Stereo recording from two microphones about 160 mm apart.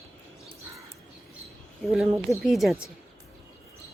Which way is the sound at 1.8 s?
Centre (ahead or behind).